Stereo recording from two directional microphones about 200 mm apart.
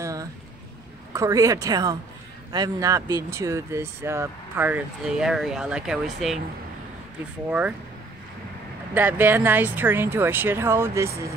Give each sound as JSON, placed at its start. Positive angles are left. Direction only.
{"t": 0.0, "sound": "boat", "side_deg": -15}
{"t": 1.1, "sound": "speech", "side_deg": -15}
{"t": 8.9, "sound": "speech", "side_deg": -10}